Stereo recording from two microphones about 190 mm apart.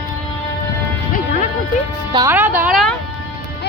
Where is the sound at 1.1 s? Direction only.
45° left (ahead or behind).